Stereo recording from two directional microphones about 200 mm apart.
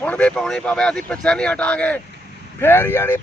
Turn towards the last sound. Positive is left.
turn(degrees=10)  # may be behind; listen again after turning